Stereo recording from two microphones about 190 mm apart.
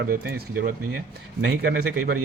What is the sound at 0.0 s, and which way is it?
Speech, 55° right (ahead or behind).